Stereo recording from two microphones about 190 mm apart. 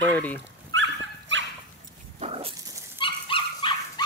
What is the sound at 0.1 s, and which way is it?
Dog, 10° left (ahead or behind).